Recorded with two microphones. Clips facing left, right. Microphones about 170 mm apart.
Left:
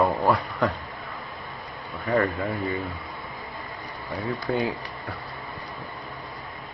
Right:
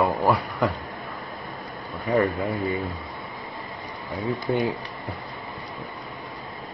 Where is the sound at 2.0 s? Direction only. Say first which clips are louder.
Right 2 dB; 15° right (ahead or behind).